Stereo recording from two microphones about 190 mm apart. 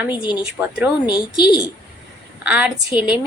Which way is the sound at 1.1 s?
25° left (ahead or behind).